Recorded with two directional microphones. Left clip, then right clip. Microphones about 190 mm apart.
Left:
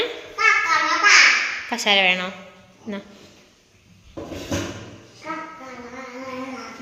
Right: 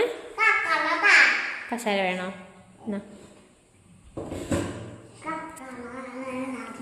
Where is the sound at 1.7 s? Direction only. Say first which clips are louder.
Left 9 dB; 10° right (ahead or behind).